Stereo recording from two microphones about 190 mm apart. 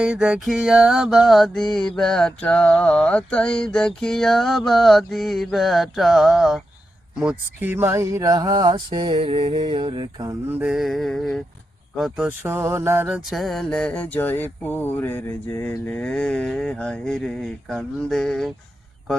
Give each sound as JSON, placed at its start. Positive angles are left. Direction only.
{"t": 0.0, "sound": "mantra", "side_deg": -5}
{"t": 7.2, "sound": "speech", "side_deg": -5}
{"t": 10.5, "sound": "mantra", "side_deg": -5}